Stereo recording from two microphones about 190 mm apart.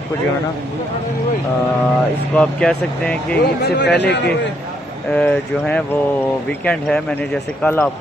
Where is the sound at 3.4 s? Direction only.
60° left (ahead or behind).